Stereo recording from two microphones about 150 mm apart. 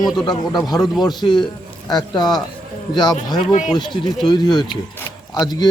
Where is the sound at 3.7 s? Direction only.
30° left (ahead or behind).